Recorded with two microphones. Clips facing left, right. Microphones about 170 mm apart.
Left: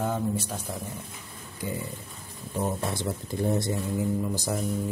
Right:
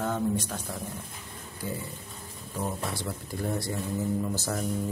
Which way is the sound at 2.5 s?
20° left (ahead or behind).